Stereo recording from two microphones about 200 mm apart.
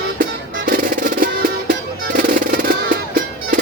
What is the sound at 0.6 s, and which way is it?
Music, 45° right (ahead or behind).